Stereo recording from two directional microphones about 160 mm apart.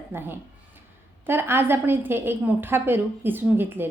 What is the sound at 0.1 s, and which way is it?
A woman's voice, 15° right (ahead or behind).